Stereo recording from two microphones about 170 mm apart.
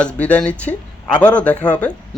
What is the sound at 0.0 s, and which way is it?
Speech, 5° left (ahead or behind).